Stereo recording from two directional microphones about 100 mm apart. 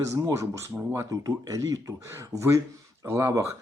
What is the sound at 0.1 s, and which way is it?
Speech, 30° right (ahead or behind).